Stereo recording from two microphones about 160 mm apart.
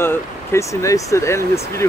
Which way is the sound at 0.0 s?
15° left (ahead or behind).